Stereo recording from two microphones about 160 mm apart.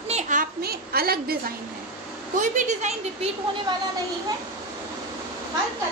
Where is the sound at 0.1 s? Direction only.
55° right (ahead or behind); by 1.4 s 70° right (ahead or behind).